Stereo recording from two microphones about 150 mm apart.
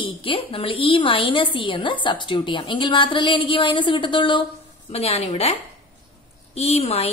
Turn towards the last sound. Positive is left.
turn(degrees=45)  # may be behind; listen again after turning